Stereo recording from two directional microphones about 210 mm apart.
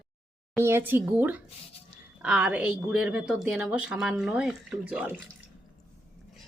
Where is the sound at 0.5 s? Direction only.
10° right (ahead or behind).